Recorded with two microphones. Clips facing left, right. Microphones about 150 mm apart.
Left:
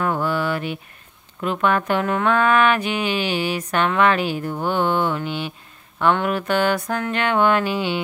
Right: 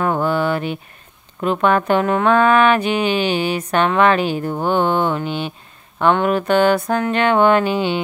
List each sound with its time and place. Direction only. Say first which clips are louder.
0.3 s mantra: right 4 dB; 25° right (ahead or behind)
1.4 s speech: right 4 dB; 30° right (ahead or behind)
1.9 s a sound: right 4 dB; 30° right (ahead or behind)